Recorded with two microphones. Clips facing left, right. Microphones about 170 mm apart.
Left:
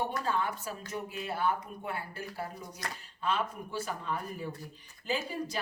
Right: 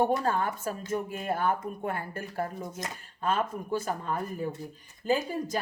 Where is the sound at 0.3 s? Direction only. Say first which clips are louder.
Right 4 dB; 45° right (ahead or behind).